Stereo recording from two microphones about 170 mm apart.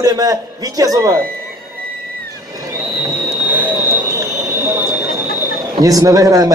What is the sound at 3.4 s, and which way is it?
Jet engine, 10° right (ahead or behind).